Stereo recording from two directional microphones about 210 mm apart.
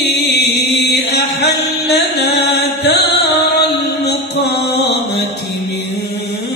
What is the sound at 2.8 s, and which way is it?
Mantra, 50° left (ahead or behind).